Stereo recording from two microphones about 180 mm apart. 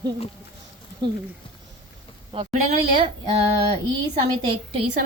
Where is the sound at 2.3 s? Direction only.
40° right (ahead or behind).